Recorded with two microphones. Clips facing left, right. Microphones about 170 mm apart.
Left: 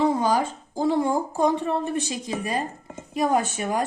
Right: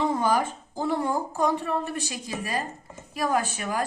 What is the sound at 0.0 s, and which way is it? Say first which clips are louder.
Speech: left 3 dB; 15° left (ahead or behind).